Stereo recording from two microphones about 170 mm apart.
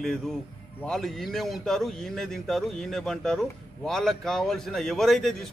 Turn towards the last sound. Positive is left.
turn(degrees=0)  # may be behind; listen again after turning